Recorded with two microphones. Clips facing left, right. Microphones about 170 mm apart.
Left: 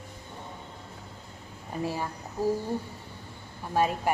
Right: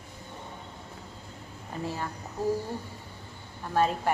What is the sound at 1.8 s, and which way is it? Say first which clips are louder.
Speech: left 2 dB; 10° left (ahead or behind).